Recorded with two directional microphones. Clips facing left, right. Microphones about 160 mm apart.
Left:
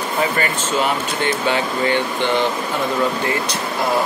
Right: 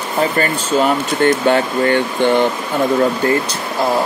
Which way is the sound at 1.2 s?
50° right (ahead or behind).